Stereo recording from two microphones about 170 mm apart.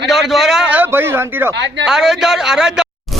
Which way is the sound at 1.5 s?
90° right.